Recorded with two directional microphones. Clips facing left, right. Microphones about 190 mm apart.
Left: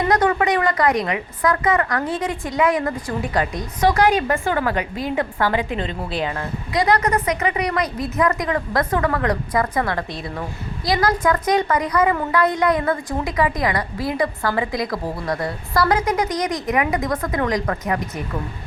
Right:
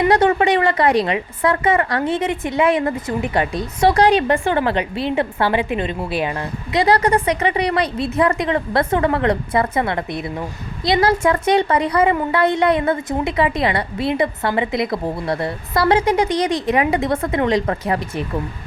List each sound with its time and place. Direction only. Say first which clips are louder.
0.1 s a woman's voice: right 3 dB; 25° right (ahead or behind)
6.8 s a woman's voice: right 3 dB; 30° right (ahead or behind)